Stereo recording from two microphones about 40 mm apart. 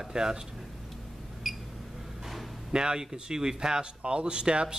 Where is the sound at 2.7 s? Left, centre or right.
Centre.